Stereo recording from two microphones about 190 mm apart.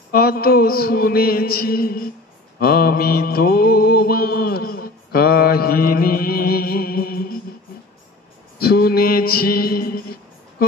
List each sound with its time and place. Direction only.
0.1 s a sound: 55° left (ahead or behind)
2.6 s mantra: 55° left (ahead or behind)
8.5 s mantra: 55° left (ahead or behind)